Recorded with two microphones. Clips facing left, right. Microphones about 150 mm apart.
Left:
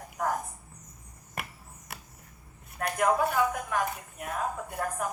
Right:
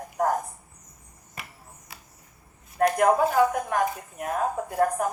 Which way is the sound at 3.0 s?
40° right (ahead or behind).